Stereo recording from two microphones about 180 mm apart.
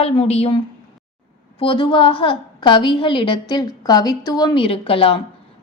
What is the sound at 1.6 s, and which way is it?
A woman's voice, 30° left (ahead or behind).